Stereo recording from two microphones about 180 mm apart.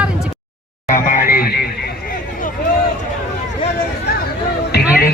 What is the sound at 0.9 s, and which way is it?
Music, 45° left (ahead or behind).